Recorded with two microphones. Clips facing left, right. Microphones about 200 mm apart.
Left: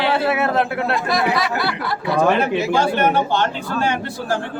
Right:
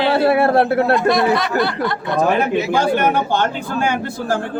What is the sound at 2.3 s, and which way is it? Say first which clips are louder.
Speech: right 1 dB; 50° right (ahead or behind).